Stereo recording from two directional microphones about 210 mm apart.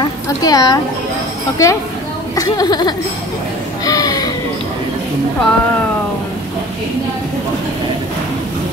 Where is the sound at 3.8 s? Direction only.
15° left (ahead or behind).